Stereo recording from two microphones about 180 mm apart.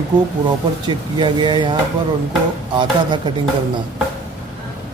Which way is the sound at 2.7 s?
25° right (ahead or behind).